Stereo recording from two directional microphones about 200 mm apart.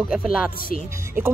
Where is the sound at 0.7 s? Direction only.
40° left (ahead or behind).